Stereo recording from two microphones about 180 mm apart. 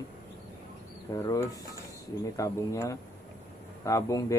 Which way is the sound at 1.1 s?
20° left (ahead or behind).